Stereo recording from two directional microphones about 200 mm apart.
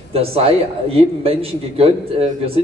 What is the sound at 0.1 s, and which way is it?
Speech, 30° right (ahead or behind).